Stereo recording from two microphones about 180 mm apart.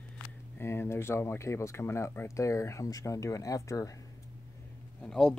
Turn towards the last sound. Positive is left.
turn(degrees=5)  # may be behind; listen again after turning